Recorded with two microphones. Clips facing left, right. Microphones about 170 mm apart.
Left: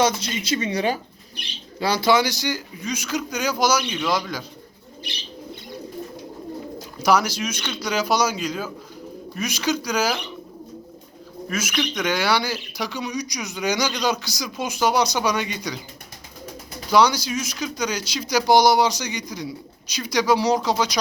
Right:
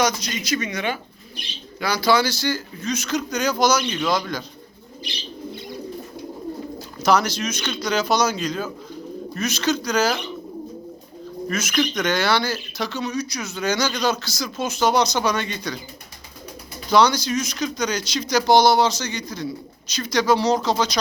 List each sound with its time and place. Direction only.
0.0 s speech: 25° left (ahead or behind); by 4.4 s 10° left (ahead or behind)
7.0 s speech: 10° left (ahead or behind)
11.4 s speech: 5° left (ahead or behind)
16.9 s speech: 10° left (ahead or behind)